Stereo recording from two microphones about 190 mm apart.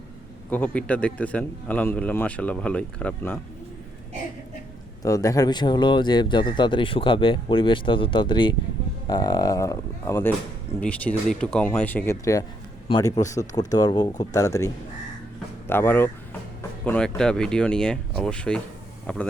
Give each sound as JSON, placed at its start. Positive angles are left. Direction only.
{"t": 0.5, "sound": "speech", "side_deg": 5}
{"t": 5.0, "sound": "speech", "side_deg": 15}